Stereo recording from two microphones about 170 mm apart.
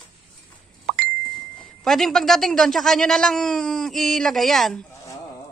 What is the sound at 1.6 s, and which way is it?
A woman's voice, centre (ahead or behind).